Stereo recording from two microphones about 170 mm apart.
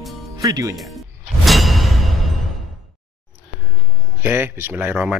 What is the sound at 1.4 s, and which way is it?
Music, centre (ahead or behind).